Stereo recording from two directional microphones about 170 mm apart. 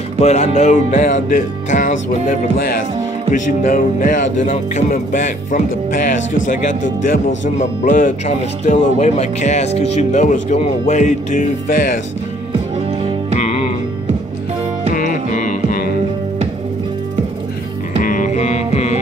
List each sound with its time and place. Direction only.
0.2 s speech: 40° left (ahead or behind)
3.3 s speech: 50° left (ahead or behind)
13.4 s music: 40° left (ahead or behind)
15.0 s music: 55° left (ahead or behind)
18.0 s music: 50° left (ahead or behind)